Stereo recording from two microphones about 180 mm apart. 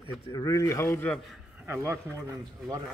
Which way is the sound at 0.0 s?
20° left (ahead or behind).